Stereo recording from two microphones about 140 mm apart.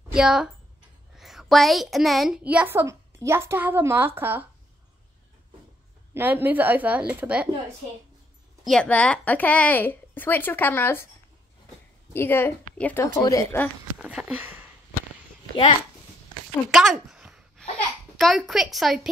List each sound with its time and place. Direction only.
0.1 s a woman's voice: 5° right (ahead or behind)
6.1 s a woman's voice: 15° right (ahead or behind)
8.6 s a woman's voice: 5° left (ahead or behind)
12.1 s a woman's voice: 15° left (ahead or behind)
13.9 s a sound: 10° right (ahead or behind)
16.7 s a sound: 5° right (ahead or behind)
18.1 s a woman's voice: centre (ahead or behind)